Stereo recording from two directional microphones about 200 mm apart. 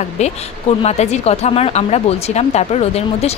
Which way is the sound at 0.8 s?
30° left (ahead or behind).